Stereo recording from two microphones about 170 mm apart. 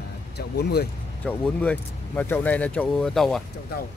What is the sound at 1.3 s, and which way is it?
Speech, 10° left (ahead or behind).